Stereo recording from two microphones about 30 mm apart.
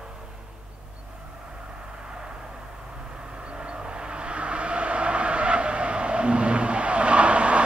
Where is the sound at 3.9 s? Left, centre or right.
Right.